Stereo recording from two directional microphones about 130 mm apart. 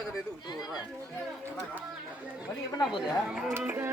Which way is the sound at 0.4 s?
30° left (ahead or behind).